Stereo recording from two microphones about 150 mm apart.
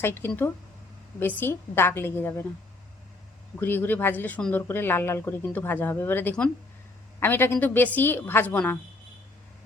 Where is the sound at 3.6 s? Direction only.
15° left (ahead or behind).